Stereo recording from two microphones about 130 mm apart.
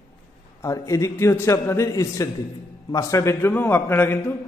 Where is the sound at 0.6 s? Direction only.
25° left (ahead or behind).